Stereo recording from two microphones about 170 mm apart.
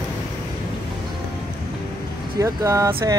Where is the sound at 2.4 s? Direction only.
20° right (ahead or behind).